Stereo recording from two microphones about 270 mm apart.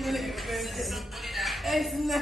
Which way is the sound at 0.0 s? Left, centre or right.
Centre.